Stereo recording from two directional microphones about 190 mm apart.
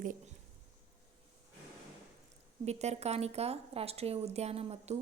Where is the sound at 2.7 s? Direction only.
35° right (ahead or behind).